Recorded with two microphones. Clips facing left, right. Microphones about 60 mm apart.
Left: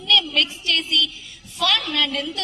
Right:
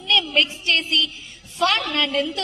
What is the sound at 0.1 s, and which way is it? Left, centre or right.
A woman's voice, right.